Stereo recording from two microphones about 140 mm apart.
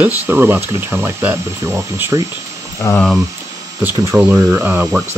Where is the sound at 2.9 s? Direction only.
Centre (ahead or behind).